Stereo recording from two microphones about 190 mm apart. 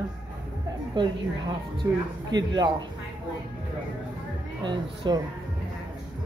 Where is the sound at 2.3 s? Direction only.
20° right (ahead or behind).